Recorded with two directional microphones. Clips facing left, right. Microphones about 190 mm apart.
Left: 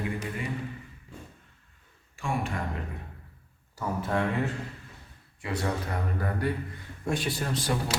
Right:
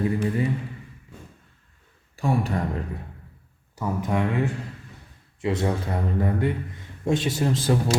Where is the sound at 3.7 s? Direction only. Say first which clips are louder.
Right 3 dB; 15° right (ahead or behind).